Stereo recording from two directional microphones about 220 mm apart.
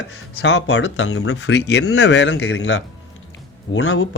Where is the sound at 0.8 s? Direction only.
75° left (ahead or behind).